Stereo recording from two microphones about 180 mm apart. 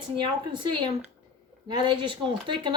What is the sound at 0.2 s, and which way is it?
Speech, 25° right (ahead or behind).